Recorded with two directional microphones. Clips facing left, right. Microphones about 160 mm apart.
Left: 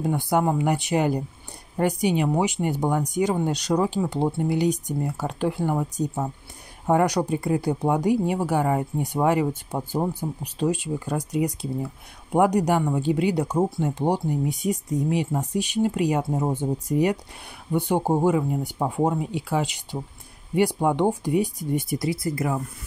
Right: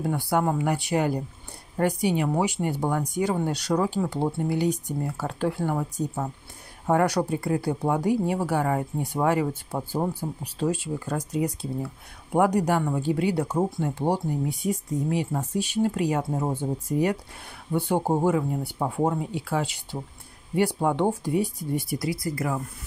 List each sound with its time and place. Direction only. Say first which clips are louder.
0.0 s speech: left 2 dB; 20° left (ahead or behind)